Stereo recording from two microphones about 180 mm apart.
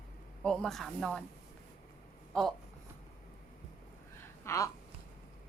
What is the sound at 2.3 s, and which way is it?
Speech, centre (ahead or behind).